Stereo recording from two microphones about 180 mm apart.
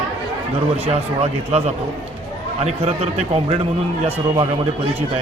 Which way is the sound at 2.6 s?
35° right (ahead or behind).